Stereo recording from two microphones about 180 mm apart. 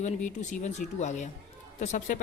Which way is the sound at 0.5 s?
40° left (ahead or behind).